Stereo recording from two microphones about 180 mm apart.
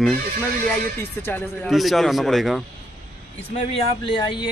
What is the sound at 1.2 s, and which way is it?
Speech, 10° left (ahead or behind).